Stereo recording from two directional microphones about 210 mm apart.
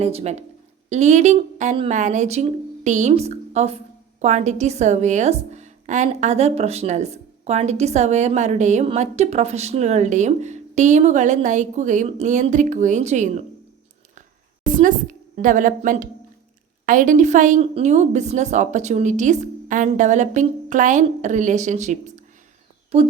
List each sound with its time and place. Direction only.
0.0 s a woman's voice: 30° right (ahead or behind)
14.7 s a woman's voice: 40° right (ahead or behind)